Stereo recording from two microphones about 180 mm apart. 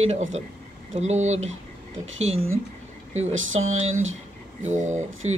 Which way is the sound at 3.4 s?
90° right.